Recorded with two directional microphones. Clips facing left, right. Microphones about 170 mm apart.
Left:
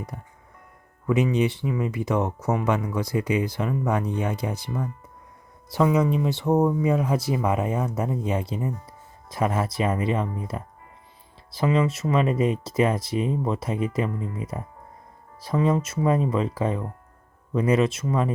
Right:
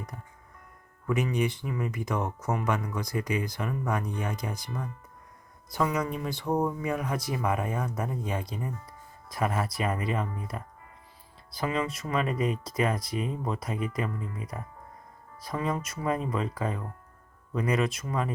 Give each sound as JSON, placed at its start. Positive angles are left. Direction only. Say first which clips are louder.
{"t": 1.0, "sound": "speech", "louder": "left 6 dB", "side_deg": 20}
{"t": 5.7, "sound": "speech", "louder": "left 8 dB", "side_deg": 5}
{"t": 6.2, "sound": "speech", "louder": "left 7 dB", "side_deg": 25}